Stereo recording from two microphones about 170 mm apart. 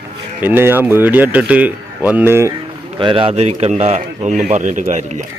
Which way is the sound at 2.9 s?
30° right (ahead or behind).